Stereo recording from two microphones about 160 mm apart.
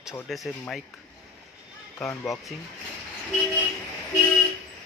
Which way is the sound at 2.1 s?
15° left (ahead or behind).